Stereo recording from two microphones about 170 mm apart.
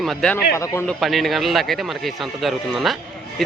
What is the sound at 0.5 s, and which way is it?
Speech, 15° left (ahead or behind).